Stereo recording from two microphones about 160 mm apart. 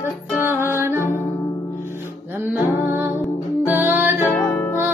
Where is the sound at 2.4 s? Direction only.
15° right (ahead or behind).